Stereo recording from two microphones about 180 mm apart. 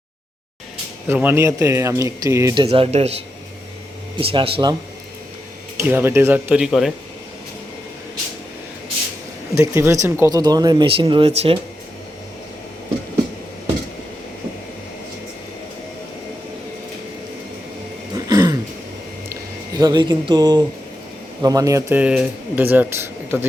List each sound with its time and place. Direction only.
1.0 s speech: 10° right (ahead or behind)
2.6 s speech: 35° right (ahead or behind)
4.2 s speech: 30° right (ahead or behind)
5.9 s speech: 10° right (ahead or behind)
9.6 s speech: 15° right (ahead or behind); by 11.6 s 30° right (ahead or behind)
18.3 s a sound: 20° right (ahead or behind)
19.7 s speech: 20° right (ahead or behind)